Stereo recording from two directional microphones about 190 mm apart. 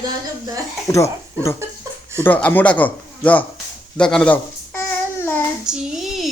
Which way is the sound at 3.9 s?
5° left (ahead or behind).